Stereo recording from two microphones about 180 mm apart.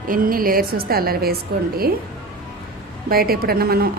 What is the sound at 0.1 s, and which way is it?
A woman's voice, 50° right (ahead or behind).